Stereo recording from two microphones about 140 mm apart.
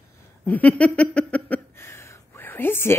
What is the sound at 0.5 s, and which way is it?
Speech, 10° left (ahead or behind).